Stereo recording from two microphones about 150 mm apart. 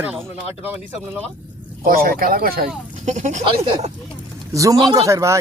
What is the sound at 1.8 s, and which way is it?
Speech, 75° right (ahead or behind).